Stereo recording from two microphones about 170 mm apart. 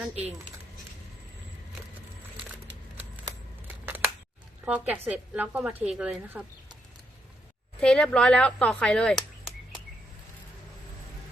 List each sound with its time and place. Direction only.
3.7 s scissors: 10° right (ahead or behind)
4.6 s a woman's voice: 10° right (ahead or behind)
7.8 s speech: 5° left (ahead or behind)